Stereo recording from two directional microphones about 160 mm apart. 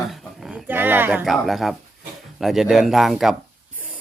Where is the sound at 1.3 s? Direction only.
Centre (ahead or behind).